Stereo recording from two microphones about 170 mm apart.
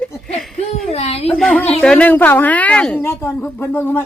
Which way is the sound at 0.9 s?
40° left (ahead or behind).